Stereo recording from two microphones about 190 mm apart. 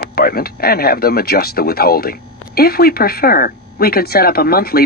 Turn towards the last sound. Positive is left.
turn(degrees=55)  # may be behind; listen again after turning